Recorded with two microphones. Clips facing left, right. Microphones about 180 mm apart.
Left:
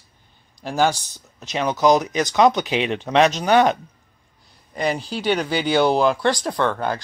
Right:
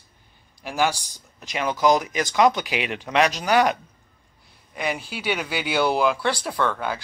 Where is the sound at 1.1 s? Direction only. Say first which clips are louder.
Left 4 dB; 20° left (ahead or behind).